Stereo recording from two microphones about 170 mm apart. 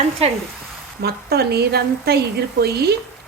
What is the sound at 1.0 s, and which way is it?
Speech, 70° right (ahead or behind).